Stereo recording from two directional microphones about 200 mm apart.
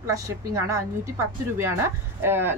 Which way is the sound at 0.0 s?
15° right (ahead or behind).